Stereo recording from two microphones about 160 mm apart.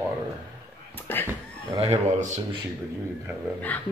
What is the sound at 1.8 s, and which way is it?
Speech, 45° right (ahead or behind).